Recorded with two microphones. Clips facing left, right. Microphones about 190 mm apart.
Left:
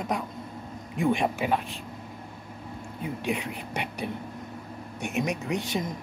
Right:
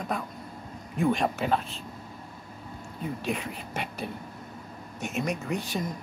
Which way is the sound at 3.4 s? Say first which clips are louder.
Left 2 dB; 70° left (ahead or behind).